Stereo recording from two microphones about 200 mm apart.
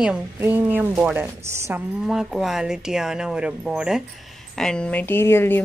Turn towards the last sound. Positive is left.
turn(degrees=10)  # may be behind; listen again after turning